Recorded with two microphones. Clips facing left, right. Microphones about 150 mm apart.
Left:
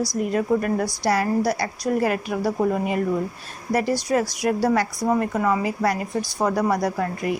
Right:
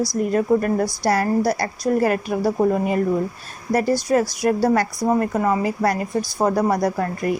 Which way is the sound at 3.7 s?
40° right (ahead or behind).